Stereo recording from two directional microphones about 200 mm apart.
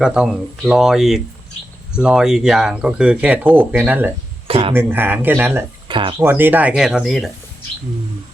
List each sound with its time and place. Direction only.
0.0 s speech: 5° right (ahead or behind)
4.4 s a sound: 30° right (ahead or behind)
4.7 s speech: 10° right (ahead or behind)
5.9 s speech: 25° right (ahead or behind)
6.2 s speech: 10° right (ahead or behind)